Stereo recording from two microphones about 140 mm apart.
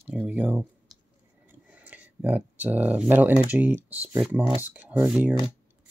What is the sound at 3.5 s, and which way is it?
Speech, 10° right (ahead or behind).